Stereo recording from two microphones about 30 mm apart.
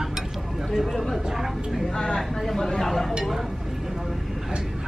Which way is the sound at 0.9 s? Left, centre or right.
Centre.